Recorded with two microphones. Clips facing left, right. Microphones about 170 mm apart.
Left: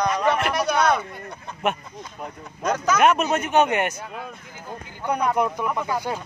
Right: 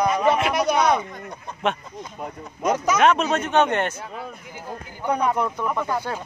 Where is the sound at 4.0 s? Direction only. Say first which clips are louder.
Right 1 dB; 5° right (ahead or behind).